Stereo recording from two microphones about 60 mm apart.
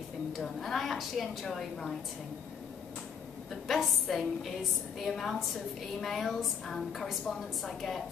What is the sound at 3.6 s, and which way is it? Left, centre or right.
A woman's voice, centre.